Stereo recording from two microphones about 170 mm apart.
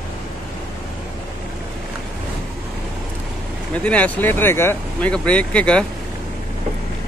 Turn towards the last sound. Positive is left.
turn(degrees=5)  # may be behind; listen again after turning